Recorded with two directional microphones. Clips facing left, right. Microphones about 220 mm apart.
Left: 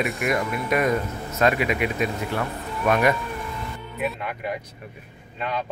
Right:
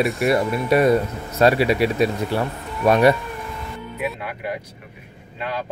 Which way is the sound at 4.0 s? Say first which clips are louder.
Even; 5° right (ahead or behind).